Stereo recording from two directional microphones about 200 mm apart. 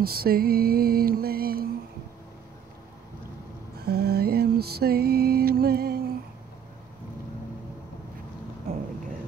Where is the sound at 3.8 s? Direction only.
50° right (ahead or behind).